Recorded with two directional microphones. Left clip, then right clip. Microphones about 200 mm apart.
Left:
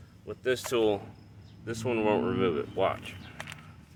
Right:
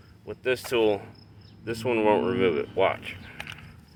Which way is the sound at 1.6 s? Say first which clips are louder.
Right 5 dB; centre (ahead or behind).